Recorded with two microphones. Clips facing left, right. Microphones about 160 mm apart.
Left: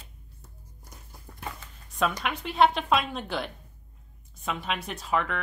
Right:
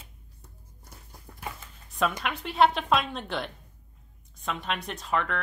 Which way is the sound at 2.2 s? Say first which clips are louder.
Even; centre (ahead or behind).